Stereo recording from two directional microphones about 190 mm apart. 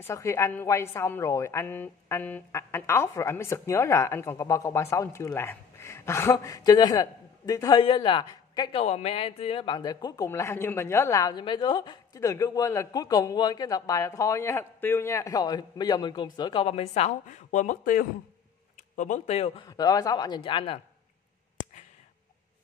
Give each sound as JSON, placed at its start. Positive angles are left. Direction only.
{"t": 0.0, "sound": "a woman's voice", "side_deg": 15}
{"t": 8.8, "sound": "speech", "side_deg": 35}